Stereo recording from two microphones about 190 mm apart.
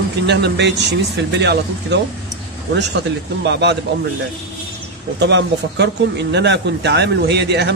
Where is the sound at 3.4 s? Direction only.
65° right (ahead or behind).